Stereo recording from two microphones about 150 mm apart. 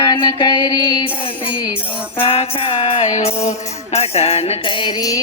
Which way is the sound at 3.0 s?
50° left (ahead or behind).